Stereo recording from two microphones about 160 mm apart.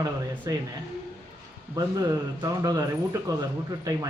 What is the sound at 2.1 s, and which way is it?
Speech, 20° right (ahead or behind).